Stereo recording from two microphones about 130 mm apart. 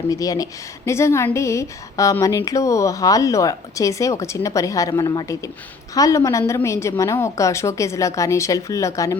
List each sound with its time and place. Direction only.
0.1 s speech: 25° left (ahead or behind)